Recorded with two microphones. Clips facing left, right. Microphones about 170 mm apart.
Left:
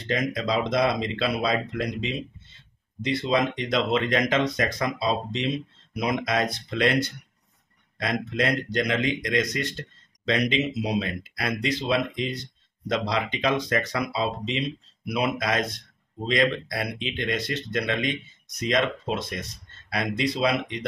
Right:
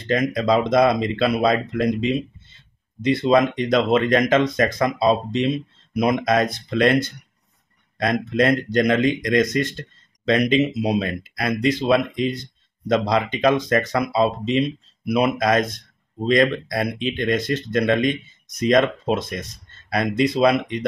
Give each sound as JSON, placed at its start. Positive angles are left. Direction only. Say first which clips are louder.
{"t": 0.1, "sound": "speech", "louder": "right 7 dB", "side_deg": -50}